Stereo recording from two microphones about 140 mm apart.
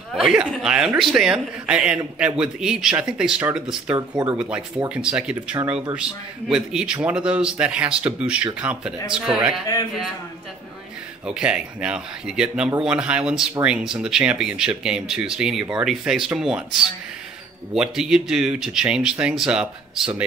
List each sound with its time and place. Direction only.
0.1 s a man's voice: 5° right (ahead or behind)
11.2 s a man's voice: 5° right (ahead or behind)